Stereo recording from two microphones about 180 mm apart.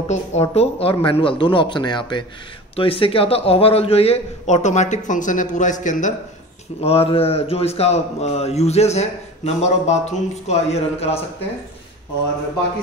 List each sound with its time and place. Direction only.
0.1 s a man's voice: 35° left (ahead or behind)
6.8 s a man's voice: 35° left (ahead or behind)